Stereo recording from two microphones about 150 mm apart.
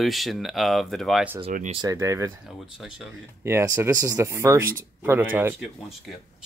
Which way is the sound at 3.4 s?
20° right (ahead or behind).